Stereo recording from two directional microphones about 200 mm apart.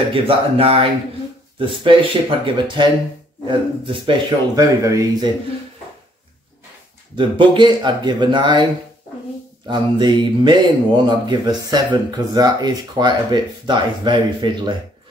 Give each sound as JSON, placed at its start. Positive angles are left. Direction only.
{"t": 0.1, "sound": "speech", "side_deg": -30}
{"t": 7.2, "sound": "speech", "side_deg": -25}
{"t": 9.7, "sound": "speech", "side_deg": -20}